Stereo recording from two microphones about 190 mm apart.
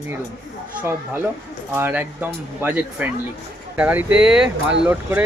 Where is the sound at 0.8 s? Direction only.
10° right (ahead or behind).